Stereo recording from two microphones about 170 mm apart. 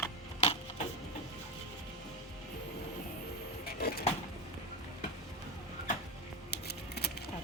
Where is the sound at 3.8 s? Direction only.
65° left (ahead or behind).